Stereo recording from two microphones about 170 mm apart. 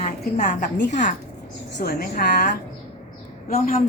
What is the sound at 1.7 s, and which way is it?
Speech, 65° left (ahead or behind).